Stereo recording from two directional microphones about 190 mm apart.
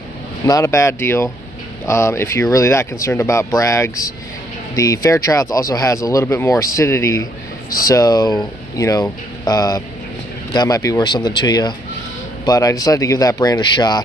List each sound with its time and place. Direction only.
0.5 s speech: 15° left (ahead or behind)